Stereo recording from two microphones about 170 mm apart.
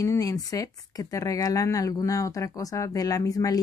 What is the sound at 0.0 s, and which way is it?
Speech, 20° left (ahead or behind).